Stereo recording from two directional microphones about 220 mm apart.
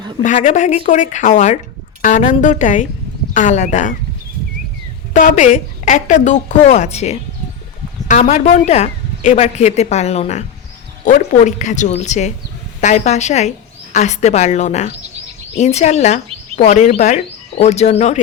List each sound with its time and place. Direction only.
0.2 s a woman's voice: 35° left (ahead or behind)
5.1 s a woman's voice: 35° left (ahead or behind)